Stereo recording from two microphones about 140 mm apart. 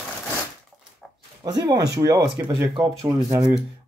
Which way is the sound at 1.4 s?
30° right (ahead or behind).